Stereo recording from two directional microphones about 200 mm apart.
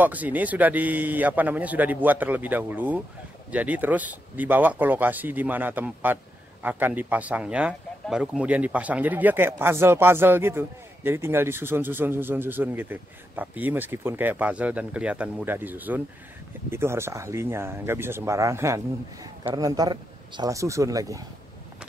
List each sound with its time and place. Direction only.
0.0 s speech: 10° right (ahead or behind)